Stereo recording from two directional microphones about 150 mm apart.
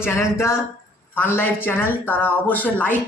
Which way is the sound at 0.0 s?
15° left (ahead or behind).